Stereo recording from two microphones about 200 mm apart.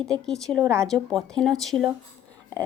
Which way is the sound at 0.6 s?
15° right (ahead or behind).